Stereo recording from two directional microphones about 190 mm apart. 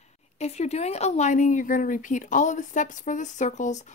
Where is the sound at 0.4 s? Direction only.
35° left (ahead or behind).